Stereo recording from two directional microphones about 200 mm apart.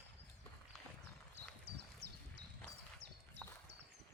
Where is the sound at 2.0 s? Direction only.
55° right (ahead or behind).